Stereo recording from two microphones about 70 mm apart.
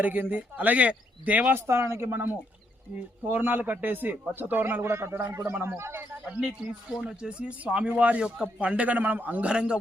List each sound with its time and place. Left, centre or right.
0.0 s speech: right
1.5 s speech: right
7.1 s speech: centre